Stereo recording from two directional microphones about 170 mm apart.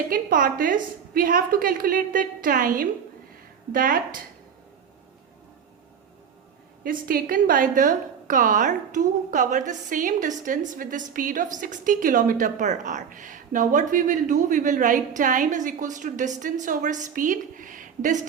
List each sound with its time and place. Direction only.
0.1 s a woman's voice: 55° right (ahead or behind)
6.8 s a woman's voice: 55° right (ahead or behind)